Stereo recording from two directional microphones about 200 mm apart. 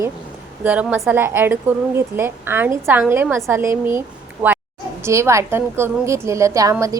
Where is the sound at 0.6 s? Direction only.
10° right (ahead or behind).